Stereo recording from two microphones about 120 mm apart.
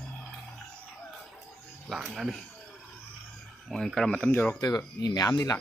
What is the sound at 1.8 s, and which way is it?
Speech, 5° right (ahead or behind).